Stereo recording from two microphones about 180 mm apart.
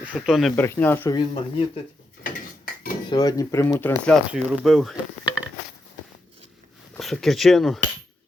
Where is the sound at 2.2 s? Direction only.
50° left (ahead or behind).